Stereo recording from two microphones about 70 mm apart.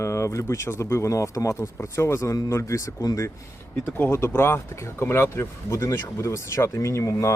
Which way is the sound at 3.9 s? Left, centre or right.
Left.